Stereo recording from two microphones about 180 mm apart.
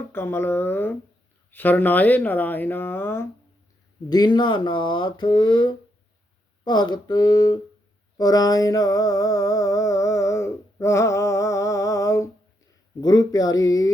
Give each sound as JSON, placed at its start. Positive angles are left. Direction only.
{"t": 0.1, "sound": "speech", "side_deg": 15}
{"t": 4.1, "sound": "speech", "side_deg": 25}
{"t": 8.2, "sound": "a sound", "side_deg": 20}
{"t": 13.0, "sound": "speech", "side_deg": 25}